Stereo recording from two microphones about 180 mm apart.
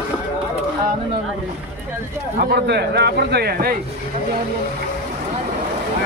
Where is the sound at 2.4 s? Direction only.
65° right (ahead or behind).